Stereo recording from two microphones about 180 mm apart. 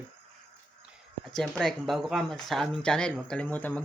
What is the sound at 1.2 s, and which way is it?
Speech, centre (ahead or behind).